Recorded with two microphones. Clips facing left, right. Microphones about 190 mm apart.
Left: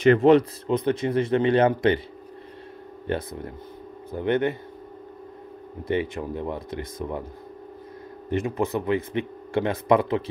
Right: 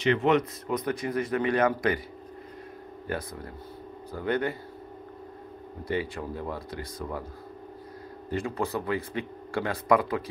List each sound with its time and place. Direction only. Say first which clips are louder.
0.0 s speech: left 7 dB; 40° left (ahead or behind)
3.1 s speech: left 5 dB; 25° left (ahead or behind)
5.9 s speech: left 5 dB; 25° left (ahead or behind)
8.3 s speech: left 5 dB; 20° left (ahead or behind)